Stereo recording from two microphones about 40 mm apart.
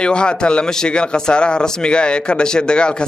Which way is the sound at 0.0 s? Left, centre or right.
Left.